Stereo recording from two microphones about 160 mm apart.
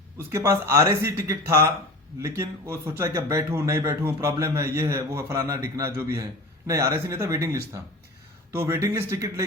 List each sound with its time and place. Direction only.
0.2 s a man's voice: 20° right (ahead or behind)